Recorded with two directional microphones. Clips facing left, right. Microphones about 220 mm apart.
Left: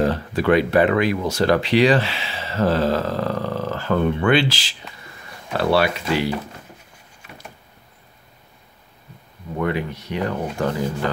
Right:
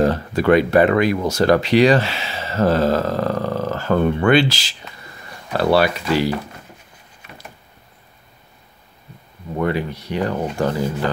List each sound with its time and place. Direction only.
0.0 s speech: 45° right (ahead or behind)
9.6 s speech: 35° right (ahead or behind)